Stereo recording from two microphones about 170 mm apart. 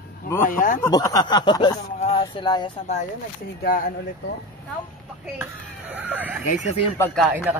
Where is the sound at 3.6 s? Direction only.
60° left (ahead or behind).